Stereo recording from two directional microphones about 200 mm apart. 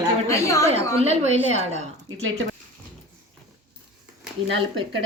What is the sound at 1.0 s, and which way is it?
Speech, 35° right (ahead or behind).